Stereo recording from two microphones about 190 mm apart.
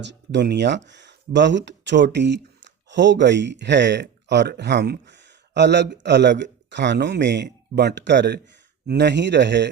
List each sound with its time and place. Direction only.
0.0 s a man's voice: 65° right (ahead or behind)